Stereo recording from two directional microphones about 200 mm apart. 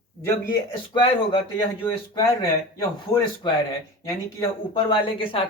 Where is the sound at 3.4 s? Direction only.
25° left (ahead or behind).